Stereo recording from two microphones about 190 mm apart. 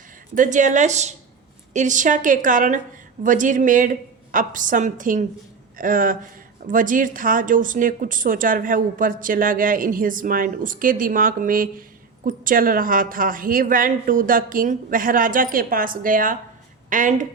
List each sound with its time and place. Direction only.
0.3 s a woman's voice: 40° right (ahead or behind)